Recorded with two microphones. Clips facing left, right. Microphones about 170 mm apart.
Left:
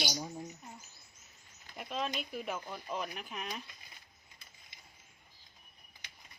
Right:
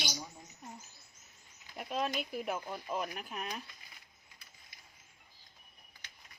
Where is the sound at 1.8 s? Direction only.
5° right (ahead or behind).